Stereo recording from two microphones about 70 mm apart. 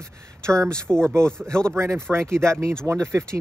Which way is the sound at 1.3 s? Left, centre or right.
Centre.